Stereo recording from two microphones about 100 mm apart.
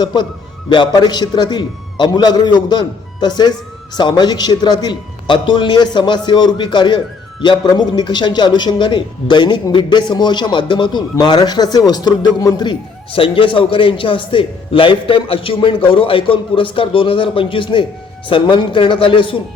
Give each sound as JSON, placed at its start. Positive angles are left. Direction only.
{"t": 0.0, "sound": "speech", "side_deg": 50}
{"t": 13.1, "sound": "a man's voice", "side_deg": 60}